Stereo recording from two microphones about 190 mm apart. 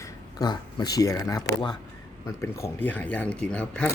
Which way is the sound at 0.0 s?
20° left (ahead or behind).